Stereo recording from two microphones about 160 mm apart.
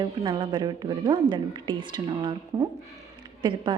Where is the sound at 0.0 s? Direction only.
30° right (ahead or behind).